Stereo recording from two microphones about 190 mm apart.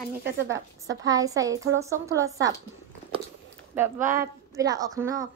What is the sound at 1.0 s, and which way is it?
Speech, 20° right (ahead or behind).